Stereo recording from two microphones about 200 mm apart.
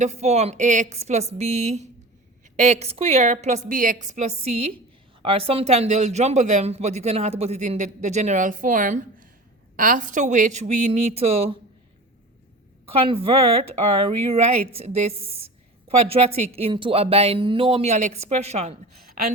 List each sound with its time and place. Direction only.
0.0 s speech: 35° right (ahead or behind)
12.8 s speech: 30° right (ahead or behind)